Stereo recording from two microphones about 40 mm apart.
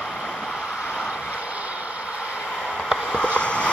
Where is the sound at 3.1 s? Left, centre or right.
Left.